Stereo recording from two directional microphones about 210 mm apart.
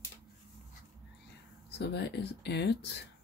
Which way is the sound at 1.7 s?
50° left (ahead or behind).